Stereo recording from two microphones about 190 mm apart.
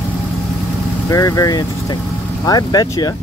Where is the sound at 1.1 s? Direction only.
15° left (ahead or behind).